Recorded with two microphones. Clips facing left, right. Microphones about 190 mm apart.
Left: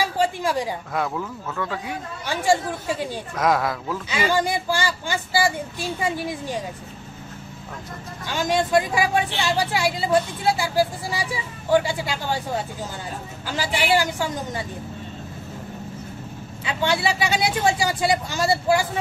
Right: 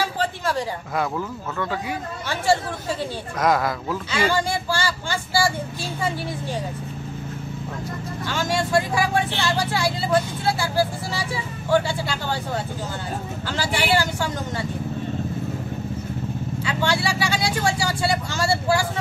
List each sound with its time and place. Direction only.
0.0 s a sound: 10° left (ahead or behind)
0.9 s speech: centre (ahead or behind)
2.2 s speech: 15° left (ahead or behind)
3.3 s speech: centre (ahead or behind)
4.1 s speech: 15° left (ahead or behind)
8.3 s speech: 20° left (ahead or behind)
16.6 s speech: 20° left (ahead or behind)